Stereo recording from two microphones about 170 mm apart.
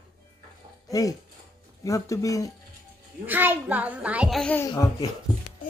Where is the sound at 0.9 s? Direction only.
20° left (ahead or behind).